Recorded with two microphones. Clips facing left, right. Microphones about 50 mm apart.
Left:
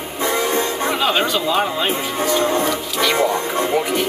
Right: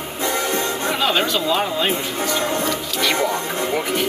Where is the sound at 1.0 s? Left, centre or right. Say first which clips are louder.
Even; centre.